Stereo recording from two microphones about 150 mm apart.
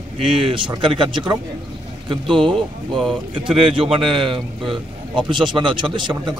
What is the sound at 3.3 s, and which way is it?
A man's voice, 35° right (ahead or behind).